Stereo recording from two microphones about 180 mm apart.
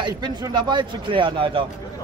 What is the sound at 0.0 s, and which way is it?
Speech, 25° right (ahead or behind).